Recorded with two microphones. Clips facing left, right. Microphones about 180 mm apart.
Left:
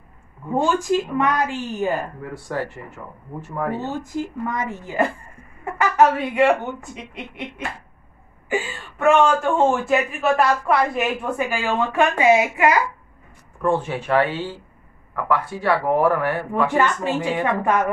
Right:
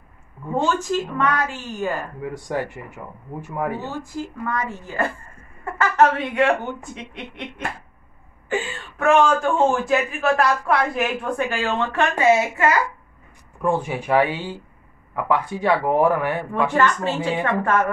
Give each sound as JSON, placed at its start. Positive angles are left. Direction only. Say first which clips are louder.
{"t": 0.7, "sound": "speech", "louder": "left 3 dB", "side_deg": 15}
{"t": 2.2, "sound": "speech", "louder": "right 1 dB", "side_deg": -15}
{"t": 3.9, "sound": "speech", "louder": "left 3 dB", "side_deg": 20}
{"t": 13.6, "sound": "speech", "louder": "left 1 dB", "side_deg": -10}
{"t": 16.7, "sound": "speech", "louder": "right 2 dB", "side_deg": 15}